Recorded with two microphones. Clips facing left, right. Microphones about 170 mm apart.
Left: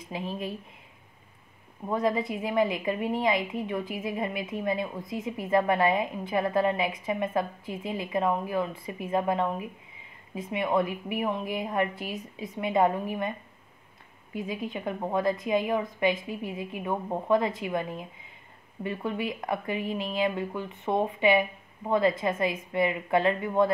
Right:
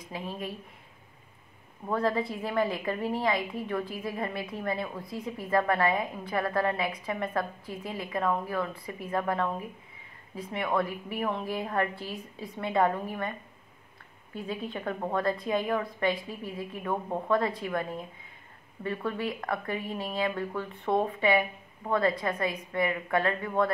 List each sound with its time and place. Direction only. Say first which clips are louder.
1.9 s a woman's voice: left 1 dB; 15° left (ahead or behind)
14.3 s a woman's voice: left 2 dB; 15° left (ahead or behind)